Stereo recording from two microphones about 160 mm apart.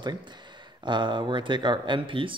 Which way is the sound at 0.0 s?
30° right (ahead or behind).